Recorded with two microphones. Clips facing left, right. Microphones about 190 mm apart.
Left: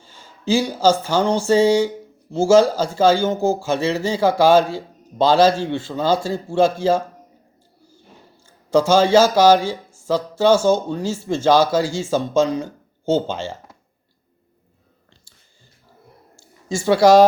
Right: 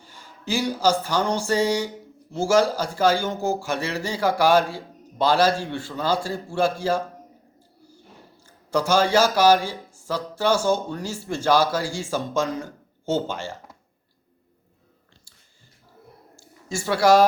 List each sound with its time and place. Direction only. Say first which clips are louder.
0.8 s a man's voice: left 3 dB; 25° left (ahead or behind)
8.7 s a man's voice: left 6 dB; 25° left (ahead or behind)
16.3 s a sound: left 5 dB; 25° left (ahead or behind)